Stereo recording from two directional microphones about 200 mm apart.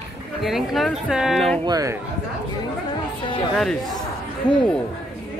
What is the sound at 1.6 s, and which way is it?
Speech, 20° right (ahead or behind).